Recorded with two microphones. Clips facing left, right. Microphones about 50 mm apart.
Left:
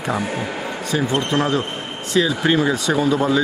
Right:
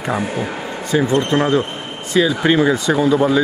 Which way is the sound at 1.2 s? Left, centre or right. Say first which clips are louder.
Right 4 dB; centre.